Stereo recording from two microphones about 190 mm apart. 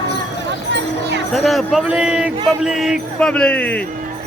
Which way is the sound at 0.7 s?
70° right (ahead or behind).